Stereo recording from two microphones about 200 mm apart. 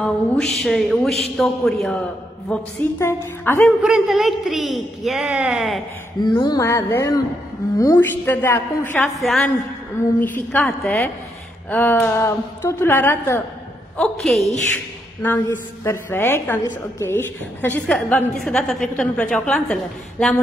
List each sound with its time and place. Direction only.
0.0 s a woman's voice: 5° left (ahead or behind)
3.8 s a woman's voice: centre (ahead or behind)
6.2 s a woman's voice: 20° left (ahead or behind); by 20.3 s 5° left (ahead or behind)